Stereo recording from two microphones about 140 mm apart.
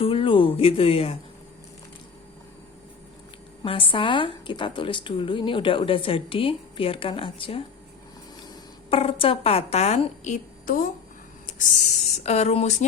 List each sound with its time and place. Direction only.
0.0 s a sound: 40° left (ahead or behind)
3.6 s a woman's voice: 40° left (ahead or behind)
8.9 s a woman's voice: 40° left (ahead or behind); by 10.8 s 70° left (ahead or behind)
12.2 s a woman's voice: 50° left (ahead or behind)